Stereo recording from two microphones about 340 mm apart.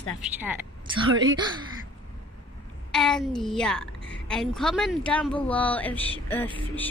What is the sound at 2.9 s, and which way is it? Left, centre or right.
Speech, centre.